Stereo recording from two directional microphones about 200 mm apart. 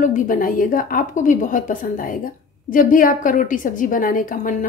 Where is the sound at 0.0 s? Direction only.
40° left (ahead or behind).